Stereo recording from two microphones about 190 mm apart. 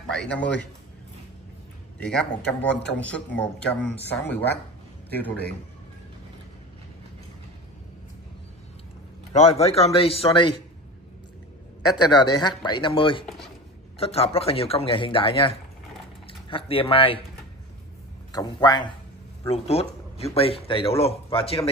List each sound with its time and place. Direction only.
0.1 s a man's voice: 5° left (ahead or behind)
2.0 s a man's voice: 5° left (ahead or behind)
9.6 s speech: 30° left (ahead or behind)
12.1 s speech: 25° left (ahead or behind)
13.2 s speech: centre (ahead or behind)
13.9 s speech: 30° left (ahead or behind)
18.3 s speech: 20° left (ahead or behind)